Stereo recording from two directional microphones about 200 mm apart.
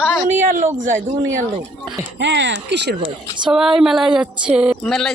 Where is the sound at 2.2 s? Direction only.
60° right (ahead or behind).